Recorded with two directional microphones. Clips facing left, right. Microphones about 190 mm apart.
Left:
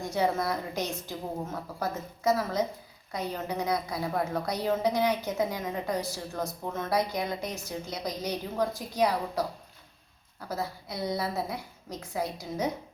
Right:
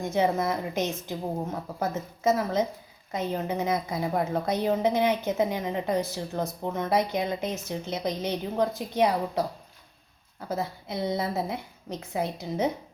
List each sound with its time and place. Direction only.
0.1 s a woman's voice: 20° right (ahead or behind)
10.5 s a woman's voice: 25° right (ahead or behind)